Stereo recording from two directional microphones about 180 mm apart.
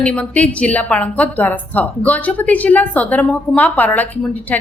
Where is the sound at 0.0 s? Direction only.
5° left (ahead or behind).